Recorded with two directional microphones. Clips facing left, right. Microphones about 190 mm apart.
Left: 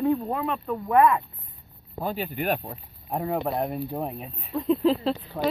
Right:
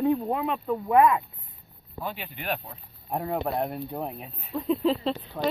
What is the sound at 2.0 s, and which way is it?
Speech, 40° left (ahead or behind).